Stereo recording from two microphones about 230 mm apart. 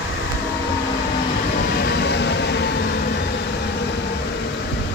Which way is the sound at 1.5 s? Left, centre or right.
Left.